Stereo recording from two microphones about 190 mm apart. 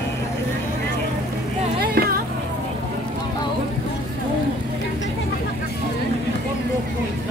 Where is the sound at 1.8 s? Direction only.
50° right (ahead or behind).